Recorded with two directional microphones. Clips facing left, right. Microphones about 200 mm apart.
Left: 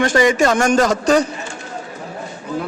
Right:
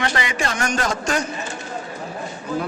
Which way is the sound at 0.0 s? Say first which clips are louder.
Left 10 dB; 45° left (ahead or behind).